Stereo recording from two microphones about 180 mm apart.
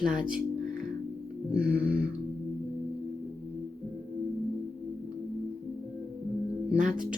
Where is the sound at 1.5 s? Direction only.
5° right (ahead or behind).